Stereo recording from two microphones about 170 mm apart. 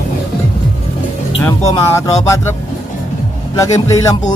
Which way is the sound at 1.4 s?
15° left (ahead or behind).